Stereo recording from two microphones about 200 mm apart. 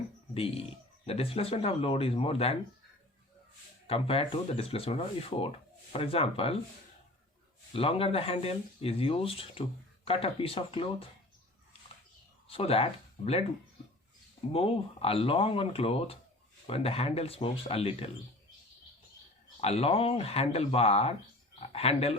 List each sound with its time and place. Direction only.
0.3 s speech: 30° left (ahead or behind)
3.8 s speech: 30° left (ahead or behind)
7.7 s speech: 30° left (ahead or behind)
12.5 s speech: 30° left (ahead or behind)
14.5 s speech: 30° left (ahead or behind)
19.6 s speech: 30° left (ahead or behind)